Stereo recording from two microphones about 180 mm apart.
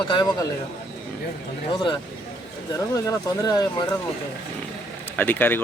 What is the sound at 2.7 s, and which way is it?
Speech, 15° left (ahead or behind).